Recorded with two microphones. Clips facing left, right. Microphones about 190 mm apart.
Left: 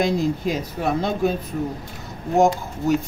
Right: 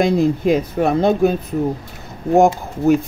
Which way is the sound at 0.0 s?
55° right (ahead or behind).